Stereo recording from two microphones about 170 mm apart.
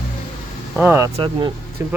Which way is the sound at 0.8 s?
15° right (ahead or behind).